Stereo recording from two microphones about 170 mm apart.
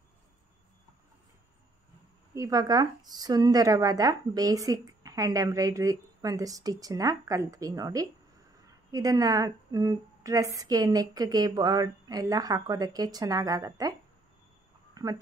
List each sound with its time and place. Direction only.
2.3 s speech: 20° right (ahead or behind)